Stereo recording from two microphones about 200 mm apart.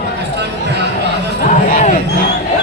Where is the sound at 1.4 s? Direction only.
40° left (ahead or behind).